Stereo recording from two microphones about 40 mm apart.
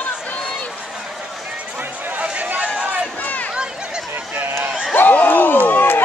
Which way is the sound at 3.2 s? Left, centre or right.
Left.